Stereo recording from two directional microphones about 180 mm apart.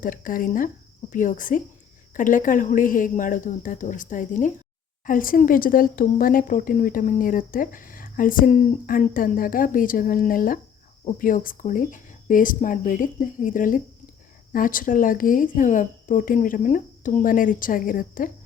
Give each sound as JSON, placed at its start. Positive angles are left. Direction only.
{"t": 0.0, "sound": "speech", "side_deg": 50}